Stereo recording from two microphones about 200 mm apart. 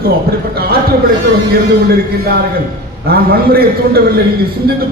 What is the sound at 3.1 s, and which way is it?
Speech, 50° right (ahead or behind).